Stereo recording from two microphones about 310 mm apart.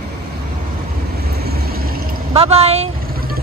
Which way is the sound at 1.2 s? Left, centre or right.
Right.